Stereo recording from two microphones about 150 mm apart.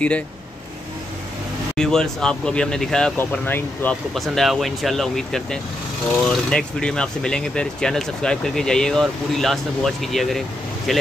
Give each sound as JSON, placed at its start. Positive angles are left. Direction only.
{"t": 1.8, "sound": "speech", "side_deg": 5}
{"t": 4.1, "sound": "speech", "side_deg": 0}